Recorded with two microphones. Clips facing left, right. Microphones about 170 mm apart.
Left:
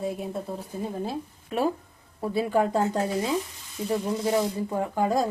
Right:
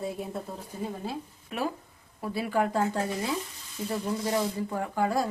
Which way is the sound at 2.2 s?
25° left (ahead or behind).